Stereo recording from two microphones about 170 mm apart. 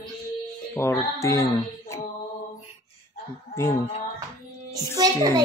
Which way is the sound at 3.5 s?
15° left (ahead or behind).